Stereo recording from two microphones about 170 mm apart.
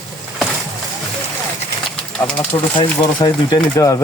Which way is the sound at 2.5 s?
15° left (ahead or behind).